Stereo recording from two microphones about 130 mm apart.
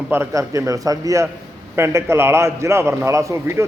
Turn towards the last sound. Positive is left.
turn(degrees=-20)  # may be behind; listen again after turning